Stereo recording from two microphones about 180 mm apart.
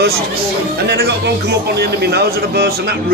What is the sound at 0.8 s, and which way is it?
A man's voice, 65° right (ahead or behind).